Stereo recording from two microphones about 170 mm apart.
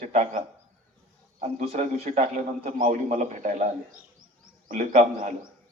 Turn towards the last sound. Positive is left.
turn(degrees=-50)  # may be behind; listen again after turning